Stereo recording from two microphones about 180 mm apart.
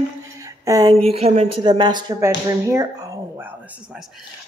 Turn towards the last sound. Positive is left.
turn(degrees=-5)  # may be behind; listen again after turning